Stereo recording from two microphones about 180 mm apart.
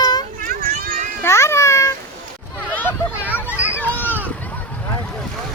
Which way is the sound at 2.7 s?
10° left (ahead or behind).